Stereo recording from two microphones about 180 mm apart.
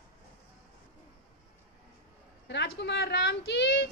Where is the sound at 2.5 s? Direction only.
75° left (ahead or behind).